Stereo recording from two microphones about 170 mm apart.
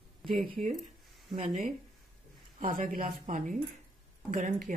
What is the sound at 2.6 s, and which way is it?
A man's voice, 55° right (ahead or behind).